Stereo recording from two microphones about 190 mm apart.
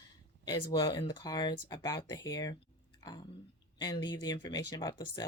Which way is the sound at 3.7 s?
20° left (ahead or behind).